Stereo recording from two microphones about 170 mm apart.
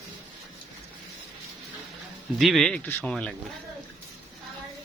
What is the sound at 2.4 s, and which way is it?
Speech, centre (ahead or behind).